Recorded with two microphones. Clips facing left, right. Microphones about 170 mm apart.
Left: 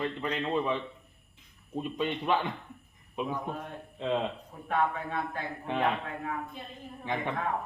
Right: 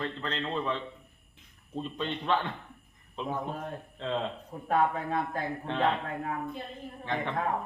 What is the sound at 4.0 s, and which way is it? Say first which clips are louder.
Speech: left 3 dB; 10° left (ahead or behind).